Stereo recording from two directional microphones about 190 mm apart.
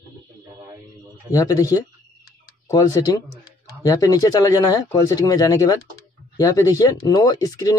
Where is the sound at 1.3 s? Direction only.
20° left (ahead or behind).